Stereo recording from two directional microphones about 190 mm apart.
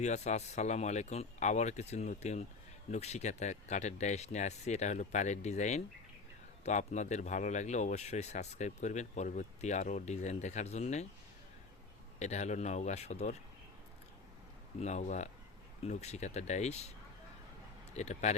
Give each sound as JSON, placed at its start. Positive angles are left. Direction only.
{"t": 0.0, "sound": "speech", "side_deg": 35}
{"t": 12.2, "sound": "speech", "side_deg": 35}
{"t": 14.8, "sound": "speech", "side_deg": 35}
{"t": 17.9, "sound": "speech", "side_deg": 35}